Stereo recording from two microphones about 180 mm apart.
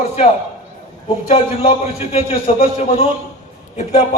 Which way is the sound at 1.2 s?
30° left (ahead or behind).